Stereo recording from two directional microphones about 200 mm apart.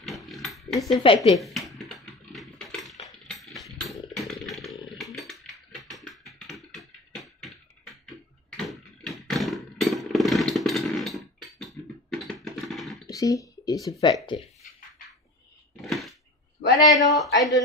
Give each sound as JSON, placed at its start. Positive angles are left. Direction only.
{"t": 0.2, "sound": "oink", "side_deg": 0}
{"t": 0.9, "sound": "speech", "side_deg": 25}
{"t": 1.3, "sound": "speech", "side_deg": 0}
{"t": 1.8, "sound": "typing", "side_deg": 0}
{"t": 3.3, "sound": "a sound", "side_deg": 0}
{"t": 3.9, "sound": "chainsaw", "side_deg": 0}
{"t": 5.1, "sound": "music", "side_deg": 0}
{"t": 8.5, "sound": "a sound", "side_deg": 0}
{"t": 13.1, "sound": "a sound", "side_deg": 15}
{"t": 14.2, "sound": "speech", "side_deg": 25}
{"t": 15.8, "sound": "a sound", "side_deg": 0}
{"t": 16.9, "sound": "speech", "side_deg": 0}